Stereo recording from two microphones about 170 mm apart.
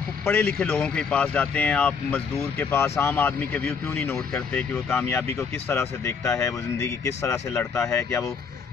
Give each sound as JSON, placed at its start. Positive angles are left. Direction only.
{"t": 0.2, "sound": "speech", "side_deg": 10}